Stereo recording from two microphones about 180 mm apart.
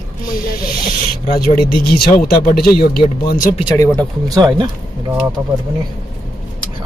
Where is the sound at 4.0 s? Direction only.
20° right (ahead or behind).